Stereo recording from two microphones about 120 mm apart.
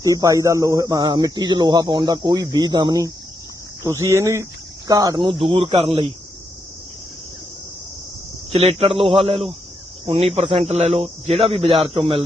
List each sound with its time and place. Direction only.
0.0 s speech: 25° right (ahead or behind)
3.8 s speech: 25° right (ahead or behind); by 6.1 s 45° right (ahead or behind)
8.5 s speech: 55° right (ahead or behind)